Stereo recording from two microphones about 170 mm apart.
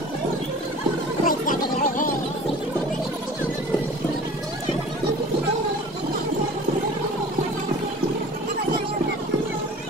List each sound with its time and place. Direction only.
1.2 s music: 50° left (ahead or behind)